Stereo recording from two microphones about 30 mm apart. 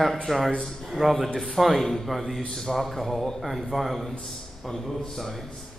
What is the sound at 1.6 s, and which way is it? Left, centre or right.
A man's voice, centre.